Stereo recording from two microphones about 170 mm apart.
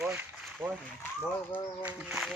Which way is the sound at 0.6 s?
25° right (ahead or behind).